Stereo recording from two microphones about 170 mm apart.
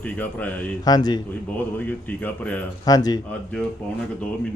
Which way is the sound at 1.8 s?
10° left (ahead or behind).